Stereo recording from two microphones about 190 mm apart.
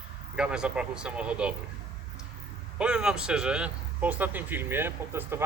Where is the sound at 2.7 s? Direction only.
5° right (ahead or behind).